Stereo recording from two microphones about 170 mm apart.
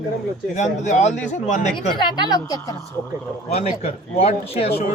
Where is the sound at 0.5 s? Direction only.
45° left (ahead or behind).